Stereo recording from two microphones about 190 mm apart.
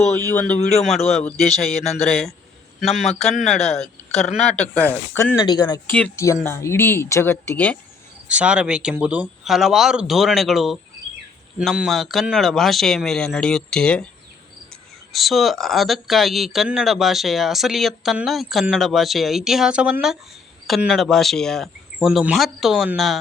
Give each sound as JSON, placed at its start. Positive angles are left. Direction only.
{"t": 0.3, "sound": "speech", "side_deg": 5}
{"t": 5.4, "sound": "speech", "side_deg": 20}
{"t": 8.3, "sound": "speech", "side_deg": -5}
{"t": 15.1, "sound": "speech", "side_deg": 0}